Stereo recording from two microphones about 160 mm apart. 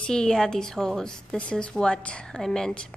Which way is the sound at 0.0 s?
5° left (ahead or behind).